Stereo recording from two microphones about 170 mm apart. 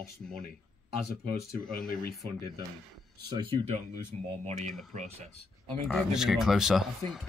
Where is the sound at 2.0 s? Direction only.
65° left (ahead or behind).